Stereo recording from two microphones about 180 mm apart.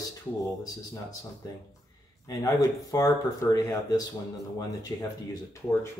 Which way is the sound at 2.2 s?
20° left (ahead or behind).